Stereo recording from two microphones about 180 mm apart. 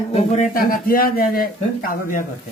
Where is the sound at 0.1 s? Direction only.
40° left (ahead or behind).